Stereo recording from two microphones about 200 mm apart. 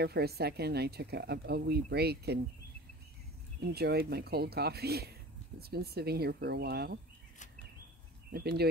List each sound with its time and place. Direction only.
0.0 s speech: 50° right (ahead or behind)
3.7 s speech: 50° right (ahead or behind)
8.3 s speech: 55° right (ahead or behind)